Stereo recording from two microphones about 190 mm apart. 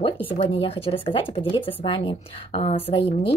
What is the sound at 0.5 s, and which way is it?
Speech, 30° left (ahead or behind).